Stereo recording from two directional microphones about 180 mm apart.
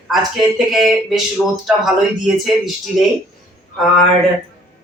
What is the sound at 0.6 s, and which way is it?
A man's voice, centre (ahead or behind).